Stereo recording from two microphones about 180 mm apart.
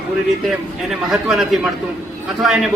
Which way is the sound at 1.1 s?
Centre (ahead or behind).